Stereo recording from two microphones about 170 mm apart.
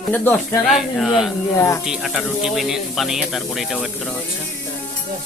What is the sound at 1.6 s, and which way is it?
Speech, 15° left (ahead or behind).